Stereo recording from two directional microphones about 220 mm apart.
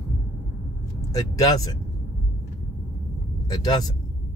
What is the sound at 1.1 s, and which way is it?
Speech, 15° left (ahead or behind).